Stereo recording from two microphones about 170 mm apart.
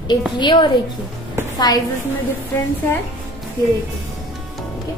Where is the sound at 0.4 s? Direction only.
25° left (ahead or behind).